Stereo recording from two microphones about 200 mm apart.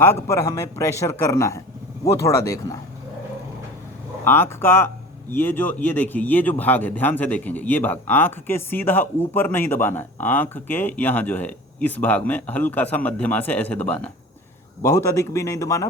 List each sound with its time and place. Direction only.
0.0 s speech: 15° left (ahead or behind)
4.2 s speech: 10° left (ahead or behind)